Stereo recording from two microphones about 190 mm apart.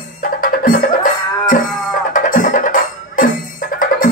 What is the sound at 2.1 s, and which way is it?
Music, 45° left (ahead or behind).